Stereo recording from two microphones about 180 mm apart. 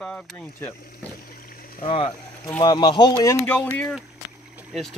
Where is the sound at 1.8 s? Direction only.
30° left (ahead or behind).